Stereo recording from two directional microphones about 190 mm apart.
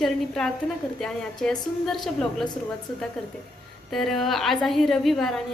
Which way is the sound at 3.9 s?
Centre (ahead or behind).